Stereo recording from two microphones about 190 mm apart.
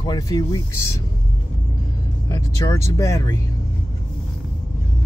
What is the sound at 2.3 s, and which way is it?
Vehicle, 15° left (ahead or behind).